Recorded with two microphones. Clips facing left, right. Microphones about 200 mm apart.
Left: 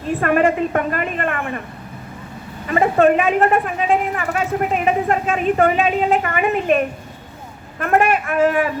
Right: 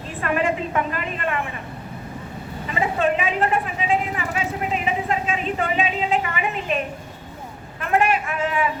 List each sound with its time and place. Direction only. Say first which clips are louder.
0.2 s a man's voice: left 5 dB; 55° left (ahead or behind)
2.6 s a man's voice: left 8 dB; 55° left (ahead or behind)